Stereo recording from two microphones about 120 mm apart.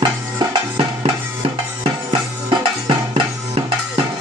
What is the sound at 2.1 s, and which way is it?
Music, 40° right (ahead or behind).